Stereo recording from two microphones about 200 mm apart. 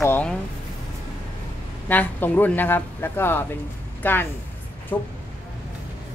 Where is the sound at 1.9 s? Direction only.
10° left (ahead or behind).